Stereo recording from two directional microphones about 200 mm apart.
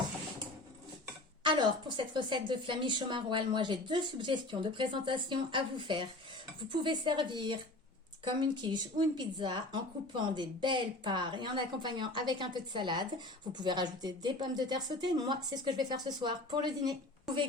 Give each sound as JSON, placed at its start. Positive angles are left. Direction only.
{"t": 1.5, "sound": "a woman's voice", "side_deg": -25}